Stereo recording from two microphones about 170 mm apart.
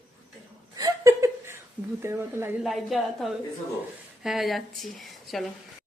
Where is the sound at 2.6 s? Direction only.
Centre (ahead or behind).